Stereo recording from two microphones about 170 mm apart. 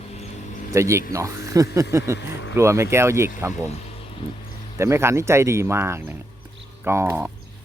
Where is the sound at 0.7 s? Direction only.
15° right (ahead or behind).